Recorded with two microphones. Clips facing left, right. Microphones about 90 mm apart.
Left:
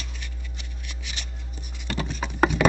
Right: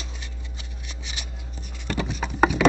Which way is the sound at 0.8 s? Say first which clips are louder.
Even; 20° right (ahead or behind).